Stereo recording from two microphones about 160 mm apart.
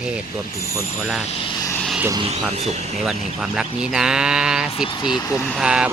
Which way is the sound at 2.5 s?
45° right (ahead or behind).